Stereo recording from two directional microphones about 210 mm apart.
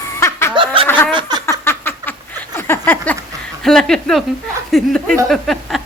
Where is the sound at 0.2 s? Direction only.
10° left (ahead or behind).